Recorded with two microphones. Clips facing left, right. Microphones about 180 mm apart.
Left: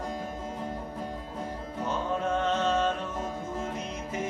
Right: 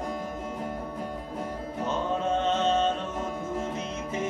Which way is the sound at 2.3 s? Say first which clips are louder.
Right 2 dB; 20° right (ahead or behind).